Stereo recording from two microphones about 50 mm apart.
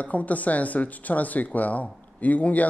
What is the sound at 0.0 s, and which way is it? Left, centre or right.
Speech, left.